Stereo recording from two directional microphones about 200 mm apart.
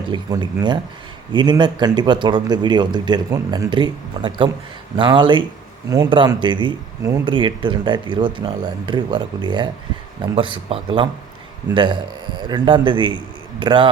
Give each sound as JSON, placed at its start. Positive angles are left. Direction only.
{"t": 0.1, "sound": "speech", "side_deg": -20}